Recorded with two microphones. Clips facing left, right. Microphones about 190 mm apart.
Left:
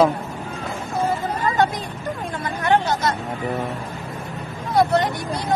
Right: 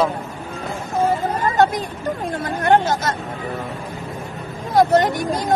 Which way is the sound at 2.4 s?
45° right (ahead or behind).